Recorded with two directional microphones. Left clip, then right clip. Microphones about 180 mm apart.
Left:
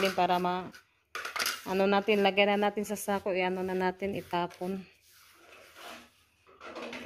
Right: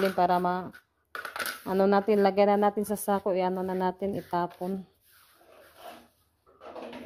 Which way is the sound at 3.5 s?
5° right (ahead or behind).